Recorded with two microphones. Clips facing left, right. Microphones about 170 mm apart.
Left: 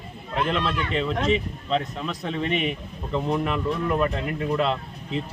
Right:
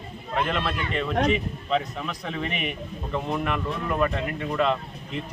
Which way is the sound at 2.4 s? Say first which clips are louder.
Left 6 dB; 30° left (ahead or behind).